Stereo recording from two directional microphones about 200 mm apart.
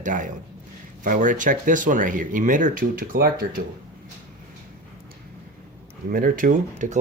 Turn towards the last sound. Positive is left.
turn(degrees=-40)  # may be behind; listen again after turning